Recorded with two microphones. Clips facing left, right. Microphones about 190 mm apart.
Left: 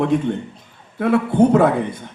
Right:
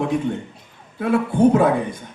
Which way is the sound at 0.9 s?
60° left (ahead or behind).